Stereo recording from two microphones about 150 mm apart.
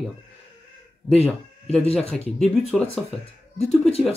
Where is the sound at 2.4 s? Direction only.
5° left (ahead or behind).